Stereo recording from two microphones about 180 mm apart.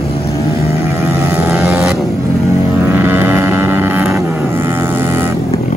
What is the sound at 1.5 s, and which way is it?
Vehicle, 5° right (ahead or behind).